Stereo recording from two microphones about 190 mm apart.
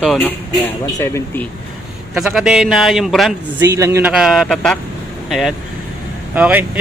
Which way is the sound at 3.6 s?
15° right (ahead or behind).